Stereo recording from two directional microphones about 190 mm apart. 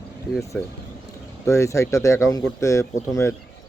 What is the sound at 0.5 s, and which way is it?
Speech, 10° left (ahead or behind).